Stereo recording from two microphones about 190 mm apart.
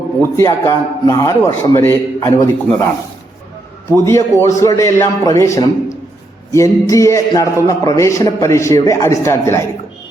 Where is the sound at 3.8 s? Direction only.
15° left (ahead or behind).